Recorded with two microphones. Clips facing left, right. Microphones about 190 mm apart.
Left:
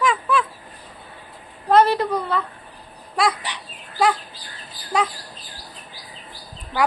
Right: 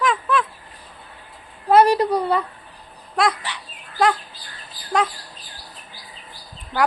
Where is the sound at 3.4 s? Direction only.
15° left (ahead or behind).